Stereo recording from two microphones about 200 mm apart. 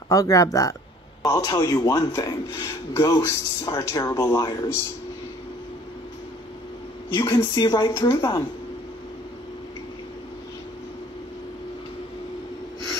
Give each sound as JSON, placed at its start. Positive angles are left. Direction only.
{"t": 0.1, "sound": "a man's voice", "side_deg": 15}
{"t": 7.2, "sound": "a man's voice", "side_deg": 10}